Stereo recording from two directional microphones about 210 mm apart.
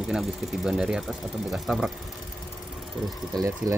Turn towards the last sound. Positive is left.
turn(degrees=-15)  # may be behind; listen again after turning